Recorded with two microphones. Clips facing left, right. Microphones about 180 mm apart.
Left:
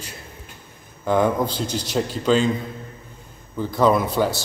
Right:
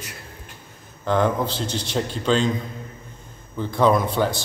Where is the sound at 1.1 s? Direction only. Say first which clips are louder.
Left 2 dB; 10° left (ahead or behind).